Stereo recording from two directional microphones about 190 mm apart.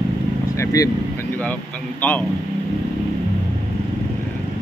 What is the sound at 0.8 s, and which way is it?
Speech, 15° left (ahead or behind).